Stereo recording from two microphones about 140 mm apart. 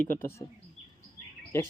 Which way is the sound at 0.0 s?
70° left (ahead or behind).